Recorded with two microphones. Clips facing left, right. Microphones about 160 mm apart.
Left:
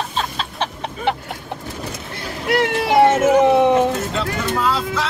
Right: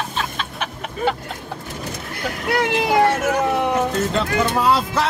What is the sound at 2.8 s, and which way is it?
Speech, 25° left (ahead or behind).